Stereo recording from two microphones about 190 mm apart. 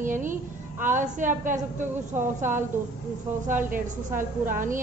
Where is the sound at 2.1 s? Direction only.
10° right (ahead or behind).